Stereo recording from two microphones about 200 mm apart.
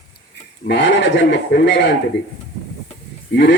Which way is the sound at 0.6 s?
60° left (ahead or behind).